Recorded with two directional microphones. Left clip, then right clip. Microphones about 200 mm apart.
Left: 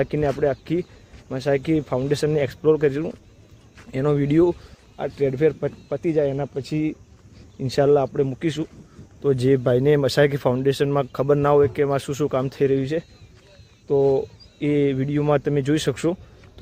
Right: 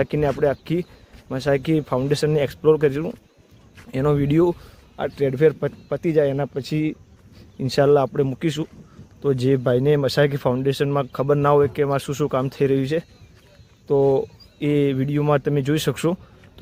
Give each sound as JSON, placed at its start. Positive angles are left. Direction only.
{"t": 0.0, "sound": "speech", "side_deg": -15}
{"t": 4.9, "sound": "speech", "side_deg": -20}
{"t": 9.2, "sound": "speech", "side_deg": -5}